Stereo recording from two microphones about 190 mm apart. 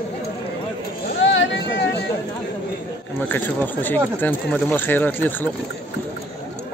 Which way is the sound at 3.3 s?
10° left (ahead or behind).